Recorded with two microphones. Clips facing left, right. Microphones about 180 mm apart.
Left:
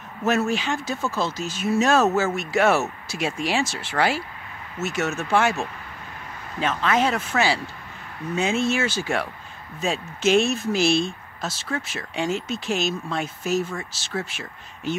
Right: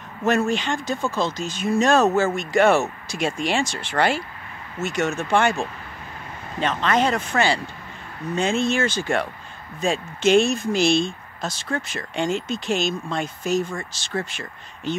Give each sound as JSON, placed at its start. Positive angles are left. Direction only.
{"t": 0.2, "sound": "speech", "side_deg": 5}